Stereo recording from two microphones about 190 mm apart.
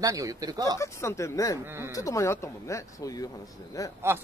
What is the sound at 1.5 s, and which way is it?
Speech, 10° right (ahead or behind).